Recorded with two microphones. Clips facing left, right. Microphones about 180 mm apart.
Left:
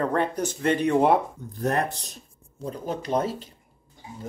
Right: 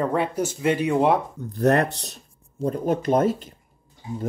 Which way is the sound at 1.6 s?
70° right (ahead or behind).